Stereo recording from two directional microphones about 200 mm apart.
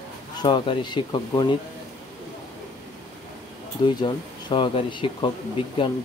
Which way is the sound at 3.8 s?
20° left (ahead or behind).